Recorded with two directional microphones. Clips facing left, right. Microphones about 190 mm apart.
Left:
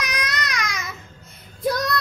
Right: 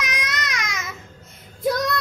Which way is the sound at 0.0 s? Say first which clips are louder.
Left 1 dB; 20° right (ahead or behind).